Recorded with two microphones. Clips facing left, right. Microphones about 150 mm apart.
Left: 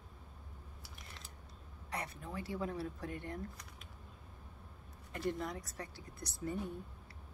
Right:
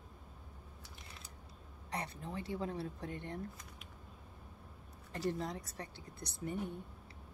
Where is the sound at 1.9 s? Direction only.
30° right (ahead or behind).